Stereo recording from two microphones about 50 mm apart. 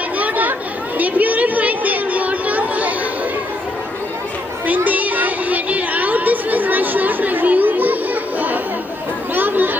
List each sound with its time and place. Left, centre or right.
0.2 s chatter: right
4.6 s chatter: right